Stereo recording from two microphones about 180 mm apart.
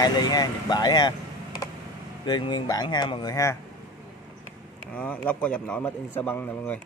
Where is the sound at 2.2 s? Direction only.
25° left (ahead or behind).